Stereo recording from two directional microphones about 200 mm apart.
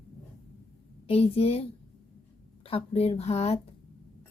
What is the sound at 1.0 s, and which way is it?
A woman's voice, 30° left (ahead or behind).